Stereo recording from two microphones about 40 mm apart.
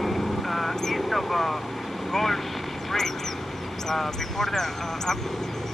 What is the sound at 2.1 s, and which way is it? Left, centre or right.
Speech, centre.